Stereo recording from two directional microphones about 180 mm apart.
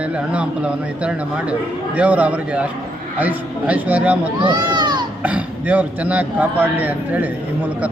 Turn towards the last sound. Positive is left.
turn(degrees=-10)  # may be behind; listen again after turning